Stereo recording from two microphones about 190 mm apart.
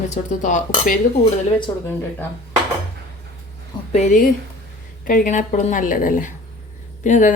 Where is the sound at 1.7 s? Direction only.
20° left (ahead or behind).